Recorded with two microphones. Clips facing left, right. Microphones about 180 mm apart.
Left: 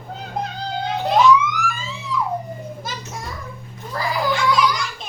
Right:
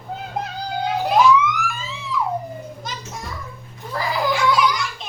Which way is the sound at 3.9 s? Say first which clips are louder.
Even; 5° right (ahead or behind).